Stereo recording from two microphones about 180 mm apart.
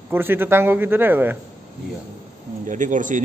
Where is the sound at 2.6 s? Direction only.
45° right (ahead or behind).